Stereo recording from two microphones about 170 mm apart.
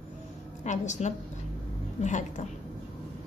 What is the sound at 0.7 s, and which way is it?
A woman's voice, 45° left (ahead or behind).